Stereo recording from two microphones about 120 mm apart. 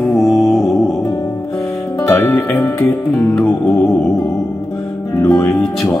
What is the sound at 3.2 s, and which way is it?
Music, 5° left (ahead or behind).